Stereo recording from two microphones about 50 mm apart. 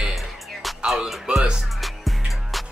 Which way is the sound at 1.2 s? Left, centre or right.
Centre.